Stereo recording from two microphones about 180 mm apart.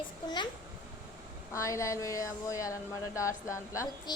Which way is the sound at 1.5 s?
15° left (ahead or behind).